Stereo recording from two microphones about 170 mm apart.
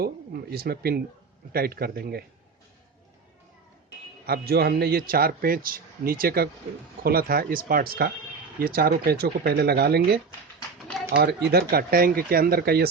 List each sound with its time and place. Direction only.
0.0 s a man's voice: 65° right (ahead or behind)
4.3 s a man's voice: 65° right (ahead or behind)
10.8 s a sound: centre (ahead or behind)
11.1 s speech: 75° right (ahead or behind)
11.7 s a man's voice: 60° right (ahead or behind)